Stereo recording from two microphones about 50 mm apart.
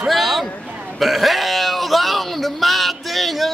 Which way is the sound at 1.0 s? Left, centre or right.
Centre.